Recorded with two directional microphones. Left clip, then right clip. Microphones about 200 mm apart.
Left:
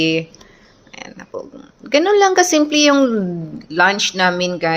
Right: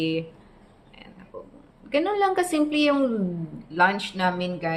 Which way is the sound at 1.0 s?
35° left (ahead or behind).